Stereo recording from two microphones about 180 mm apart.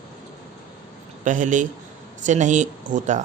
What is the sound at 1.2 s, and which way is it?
Speech, 45° right (ahead or behind).